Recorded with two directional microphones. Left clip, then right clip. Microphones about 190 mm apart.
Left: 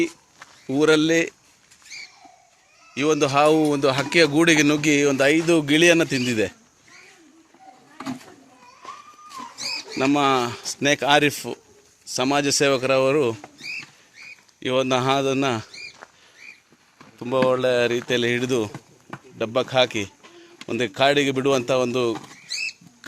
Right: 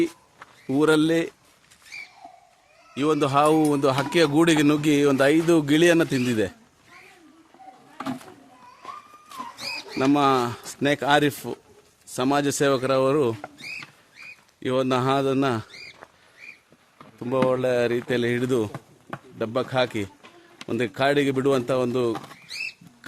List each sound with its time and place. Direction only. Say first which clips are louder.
0.7 s speech: left 2 dB; 5° right (ahead or behind)
2.9 s speech: left 2 dB; 5° right (ahead or behind)
9.6 s speech: left 2 dB; 5° right (ahead or behind)
14.6 s speech: left 2 dB; 5° right (ahead or behind)
16.0 s rodents: left 2 dB; 60° left (ahead or behind)
17.2 s speech: left 2 dB; centre (ahead or behind)